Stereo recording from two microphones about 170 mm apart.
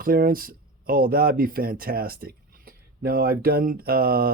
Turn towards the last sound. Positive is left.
turn(degrees=-60)  # may be behind; listen again after turning